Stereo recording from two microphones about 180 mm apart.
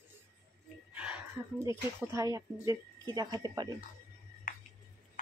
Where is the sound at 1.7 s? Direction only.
20° right (ahead or behind).